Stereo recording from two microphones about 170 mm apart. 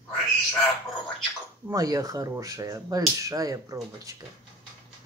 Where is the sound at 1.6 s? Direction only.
20° right (ahead or behind).